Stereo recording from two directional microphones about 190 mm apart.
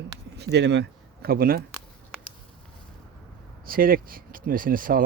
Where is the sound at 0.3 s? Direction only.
65° right (ahead or behind).